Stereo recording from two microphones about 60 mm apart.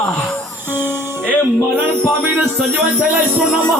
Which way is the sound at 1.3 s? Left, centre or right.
Right.